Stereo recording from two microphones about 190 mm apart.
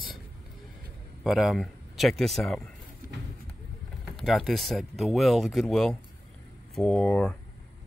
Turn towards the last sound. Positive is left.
turn(degrees=5)  # may be behind; listen again after turning